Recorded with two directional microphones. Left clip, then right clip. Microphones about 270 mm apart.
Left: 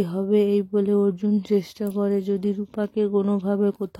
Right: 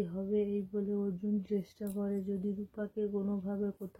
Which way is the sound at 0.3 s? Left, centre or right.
Left.